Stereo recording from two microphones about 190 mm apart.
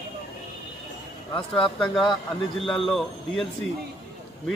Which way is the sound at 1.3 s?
5° left (ahead or behind).